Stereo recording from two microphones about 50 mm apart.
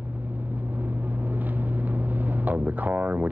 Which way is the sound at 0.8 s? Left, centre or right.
Right.